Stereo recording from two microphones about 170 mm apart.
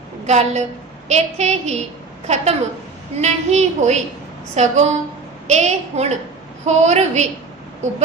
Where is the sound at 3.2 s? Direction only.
40° right (ahead or behind).